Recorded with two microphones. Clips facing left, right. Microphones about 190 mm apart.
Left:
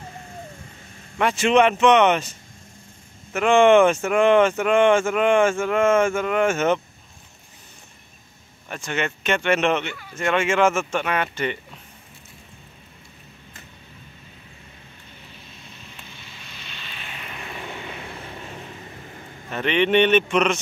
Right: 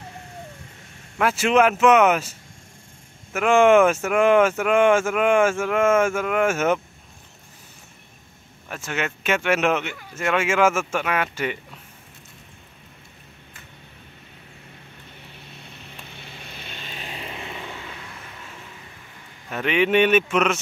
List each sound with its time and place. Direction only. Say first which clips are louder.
1.1 s speech: left 1 dB; 5° right (ahead or behind)
3.3 s speech: left 1 dB; 5° right (ahead or behind)
8.6 s speech: left 1 dB; 5° right (ahead or behind)
16.2 s vehicle: right 3 dB; 60° right (ahead or behind); by 17.6 s 25° right (ahead or behind)
17.6 s vehicle: left 2 dB; 20° left (ahead or behind)
19.5 s speech: left 1 dB; 5° right (ahead or behind)